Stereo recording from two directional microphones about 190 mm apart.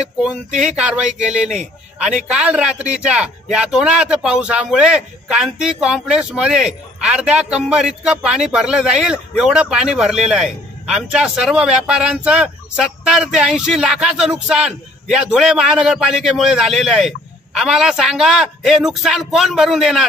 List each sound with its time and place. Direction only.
0.7 s a man's voice: 5° right (ahead or behind)